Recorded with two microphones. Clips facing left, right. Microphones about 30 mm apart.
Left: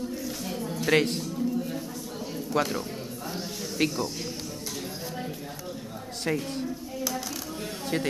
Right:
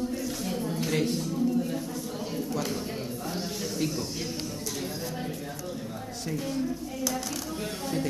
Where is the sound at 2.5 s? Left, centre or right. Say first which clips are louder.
Left 8 dB; left.